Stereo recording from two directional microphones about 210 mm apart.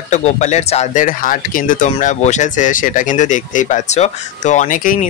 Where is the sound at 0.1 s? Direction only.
35° left (ahead or behind).